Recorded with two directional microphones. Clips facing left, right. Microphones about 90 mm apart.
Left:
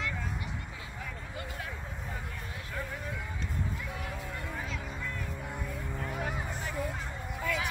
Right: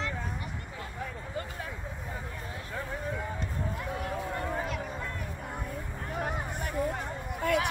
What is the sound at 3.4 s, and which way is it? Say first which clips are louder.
Music: right 2 dB; 45° right (ahead or behind).